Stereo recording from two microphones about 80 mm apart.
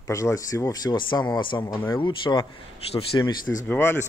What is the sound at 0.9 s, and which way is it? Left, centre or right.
Speech, left.